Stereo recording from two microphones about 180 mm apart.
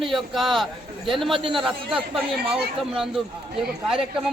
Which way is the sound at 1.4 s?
30° right (ahead or behind).